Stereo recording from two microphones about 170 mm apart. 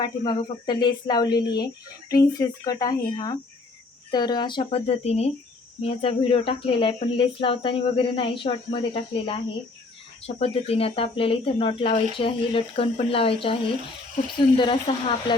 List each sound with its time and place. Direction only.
0.0 s speech: 25° left (ahead or behind)